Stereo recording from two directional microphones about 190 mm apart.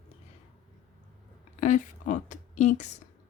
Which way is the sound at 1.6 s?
40° left (ahead or behind).